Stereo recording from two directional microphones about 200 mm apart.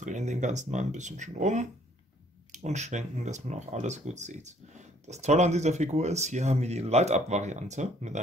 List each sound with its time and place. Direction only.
0.0 s speech: 35° right (ahead or behind)